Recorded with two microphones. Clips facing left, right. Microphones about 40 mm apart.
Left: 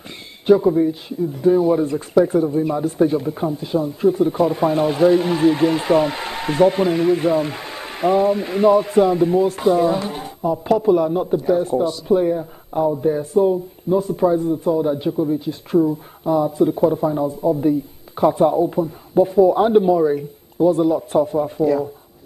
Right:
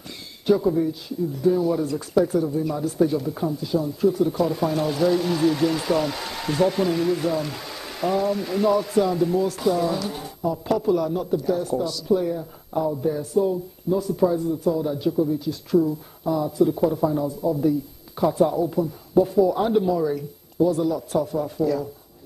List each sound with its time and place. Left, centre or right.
0.5 s speech: left